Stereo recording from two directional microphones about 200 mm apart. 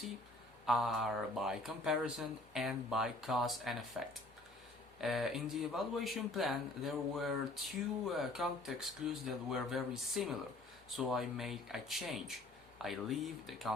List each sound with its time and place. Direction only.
0.6 s speech: centre (ahead or behind)
4.9 s speech: centre (ahead or behind)